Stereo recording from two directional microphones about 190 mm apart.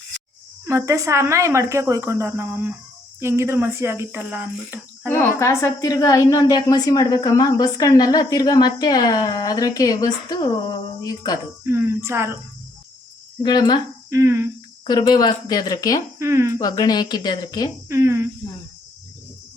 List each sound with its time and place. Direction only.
0.7 s speech: 15° right (ahead or behind)
5.1 s a woman's voice: 15° left (ahead or behind)
11.6 s speech: 10° right (ahead or behind)
13.4 s a woman's voice: 20° left (ahead or behind)
14.1 s speech: 15° right (ahead or behind)
14.8 s a woman's voice: 20° left (ahead or behind)
16.1 s speech: 15° right (ahead or behind)
16.6 s a woman's voice: 20° left (ahead or behind)
17.8 s speech: 15° right (ahead or behind)